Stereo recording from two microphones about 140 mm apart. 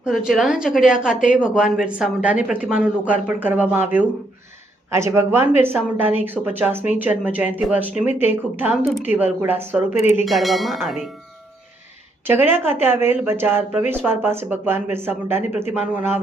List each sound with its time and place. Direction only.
0.0 s speech: centre (ahead or behind)
10.2 s speech: centre (ahead or behind)
12.3 s speech: 15° right (ahead or behind)